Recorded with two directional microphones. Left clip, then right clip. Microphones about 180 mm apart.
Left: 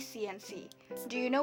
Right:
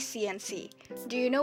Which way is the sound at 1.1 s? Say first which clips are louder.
Right 4 dB; 20° right (ahead or behind).